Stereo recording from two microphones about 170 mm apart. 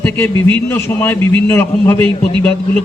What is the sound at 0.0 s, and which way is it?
A man's voice, 10° left (ahead or behind).